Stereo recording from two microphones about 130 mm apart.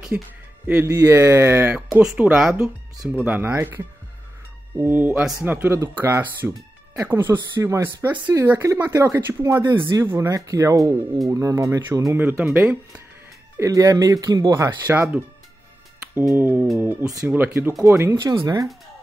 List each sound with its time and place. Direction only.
0.1 s speech: 10° right (ahead or behind)
0.8 s speech: 20° right (ahead or behind)
13.6 s speech: 25° right (ahead or behind)
16.3 s speech: 15° right (ahead or behind)
18.1 s speech: 30° right (ahead or behind)